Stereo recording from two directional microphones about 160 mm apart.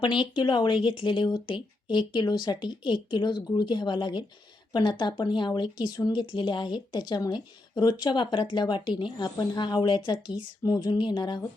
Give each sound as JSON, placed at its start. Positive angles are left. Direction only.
{"t": 0.0, "sound": "a woman's voice", "side_deg": 30}